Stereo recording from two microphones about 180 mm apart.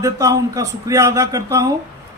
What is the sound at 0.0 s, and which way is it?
A man's voice, 20° right (ahead or behind).